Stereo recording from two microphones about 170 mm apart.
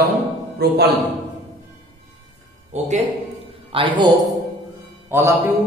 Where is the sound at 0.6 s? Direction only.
70° right (ahead or behind).